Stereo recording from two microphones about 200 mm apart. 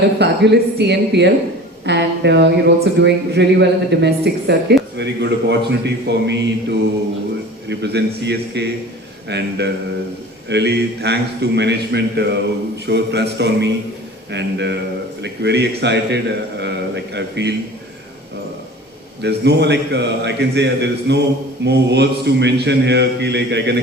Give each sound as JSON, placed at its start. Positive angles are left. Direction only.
{"t": 0.2, "sound": "speech", "side_deg": -55}
{"t": 19.2, "sound": "speech", "side_deg": -55}